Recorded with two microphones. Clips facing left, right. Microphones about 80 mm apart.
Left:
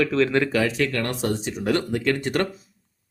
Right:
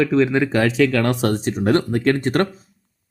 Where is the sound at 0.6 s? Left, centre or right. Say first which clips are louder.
Right 6 dB; right.